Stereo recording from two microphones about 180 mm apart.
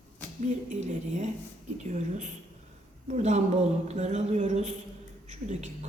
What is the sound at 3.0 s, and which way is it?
A man's voice, 40° right (ahead or behind).